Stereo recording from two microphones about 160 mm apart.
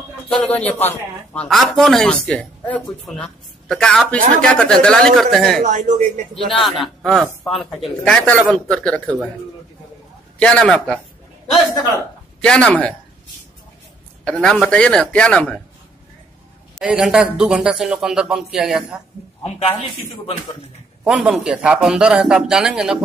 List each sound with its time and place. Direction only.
0.3 s a man's voice: 5° left (ahead or behind)
5.6 s speech: 50° right (ahead or behind)
6.6 s speech: centre (ahead or behind)
10.4 s speech: 5° left (ahead or behind)
12.4 s speech: 5° left (ahead or behind)
14.2 s speech: 5° left (ahead or behind)
16.8 s speech: 5° right (ahead or behind)
21.0 s speech: centre (ahead or behind)